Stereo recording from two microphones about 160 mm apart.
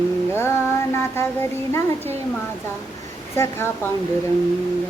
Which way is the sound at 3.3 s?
15° left (ahead or behind).